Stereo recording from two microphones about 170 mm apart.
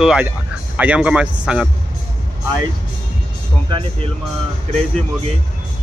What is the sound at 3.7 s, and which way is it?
Speech, 30° right (ahead or behind).